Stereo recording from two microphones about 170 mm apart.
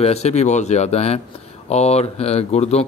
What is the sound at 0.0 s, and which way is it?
Speech, 40° left (ahead or behind).